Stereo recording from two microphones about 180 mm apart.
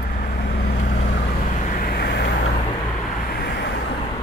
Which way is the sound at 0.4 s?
40° left (ahead or behind).